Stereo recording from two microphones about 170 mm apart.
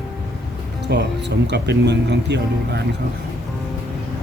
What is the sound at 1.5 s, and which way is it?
Speech, 85° right.